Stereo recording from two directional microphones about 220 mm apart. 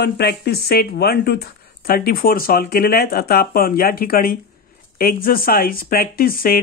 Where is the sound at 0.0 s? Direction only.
45° left (ahead or behind).